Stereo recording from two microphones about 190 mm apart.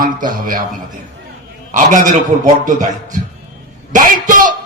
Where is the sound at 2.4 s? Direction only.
40° right (ahead or behind).